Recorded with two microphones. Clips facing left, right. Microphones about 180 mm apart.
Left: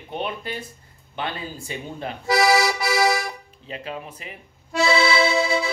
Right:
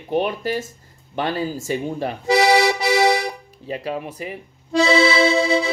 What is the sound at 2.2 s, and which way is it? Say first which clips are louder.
Accordion: right 3 dB; 25° right (ahead or behind).